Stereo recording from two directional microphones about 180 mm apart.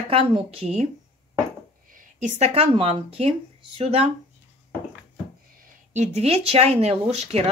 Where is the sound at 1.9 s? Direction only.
40° right (ahead or behind).